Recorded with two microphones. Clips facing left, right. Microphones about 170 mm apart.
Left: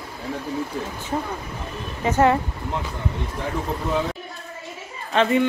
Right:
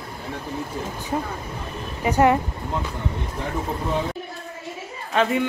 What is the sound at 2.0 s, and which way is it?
Speech, 15° right (ahead or behind).